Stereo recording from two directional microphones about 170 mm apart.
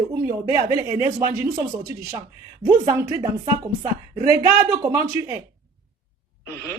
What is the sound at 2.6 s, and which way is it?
Speech, 15° right (ahead or behind).